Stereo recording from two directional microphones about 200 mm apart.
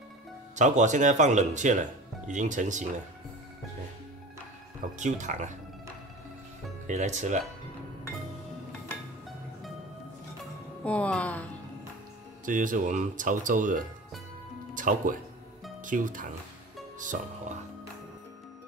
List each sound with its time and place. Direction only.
0.6 s speech: 35° right (ahead or behind)
4.9 s speech: 35° right (ahead or behind)
6.9 s speech: 35° right (ahead or behind)
10.8 s speech: 5° left (ahead or behind)
12.4 s speech: 40° right (ahead or behind)